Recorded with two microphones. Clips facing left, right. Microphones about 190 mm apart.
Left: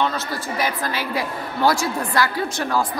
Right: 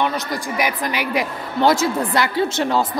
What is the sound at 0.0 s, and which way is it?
A man's voice, 15° right (ahead or behind).